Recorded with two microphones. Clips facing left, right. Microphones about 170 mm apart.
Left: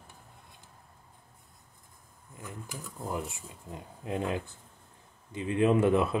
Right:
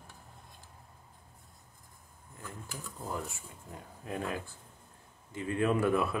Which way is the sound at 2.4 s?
15° left (ahead or behind).